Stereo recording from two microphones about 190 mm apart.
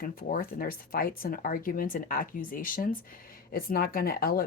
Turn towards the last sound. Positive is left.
turn(degrees=50)  # may be behind; listen again after turning